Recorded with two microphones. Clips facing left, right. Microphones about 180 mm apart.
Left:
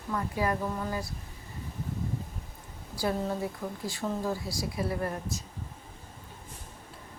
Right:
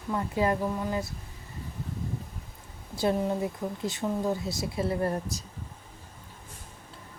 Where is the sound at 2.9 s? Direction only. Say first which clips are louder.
Right 4 dB; 20° right (ahead or behind).